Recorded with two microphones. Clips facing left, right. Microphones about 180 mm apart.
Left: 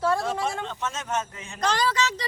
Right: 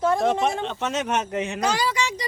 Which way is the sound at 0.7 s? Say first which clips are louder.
Right 5 dB; 70° right (ahead or behind).